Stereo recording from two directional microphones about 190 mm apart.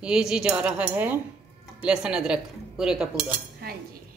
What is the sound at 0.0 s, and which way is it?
Speech, 5° right (ahead or behind).